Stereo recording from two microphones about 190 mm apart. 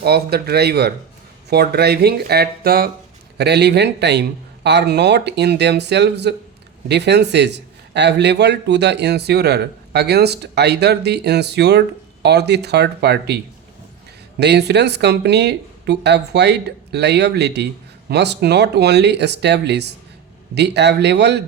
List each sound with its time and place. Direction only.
0.0 s a man's voice: 55° right (ahead or behind)